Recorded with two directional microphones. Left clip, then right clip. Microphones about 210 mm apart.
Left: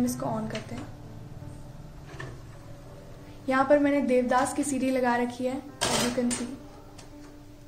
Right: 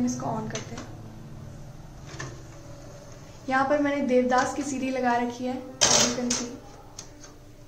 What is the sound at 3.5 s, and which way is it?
A woman's voice, 35° left (ahead or behind).